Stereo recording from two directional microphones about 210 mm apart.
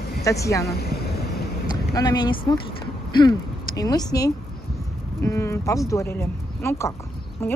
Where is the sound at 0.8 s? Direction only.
50° left (ahead or behind).